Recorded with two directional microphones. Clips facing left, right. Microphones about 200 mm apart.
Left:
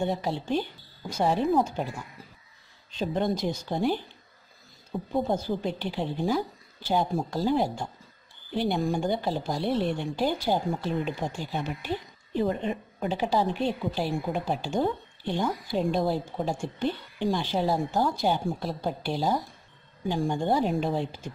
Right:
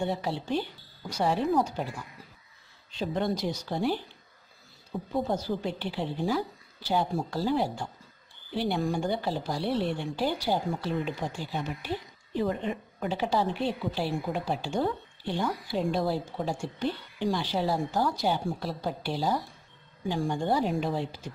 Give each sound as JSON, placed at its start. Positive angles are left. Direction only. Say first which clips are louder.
{"t": 0.0, "sound": "a woman's voice", "louder": "left 2 dB", "side_deg": 20}
{"t": 5.1, "sound": "a woman's voice", "louder": "left 2 dB", "side_deg": 20}
{"t": 13.2, "sound": "a woman's voice", "louder": "left 2 dB", "side_deg": 15}